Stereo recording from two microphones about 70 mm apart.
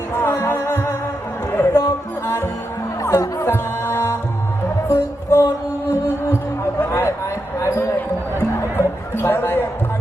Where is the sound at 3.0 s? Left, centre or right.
Left.